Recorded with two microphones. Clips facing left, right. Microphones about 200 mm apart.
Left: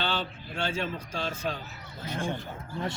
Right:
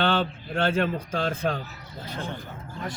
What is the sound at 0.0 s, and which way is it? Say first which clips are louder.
A man's voice: right 7 dB; 55° right (ahead or behind).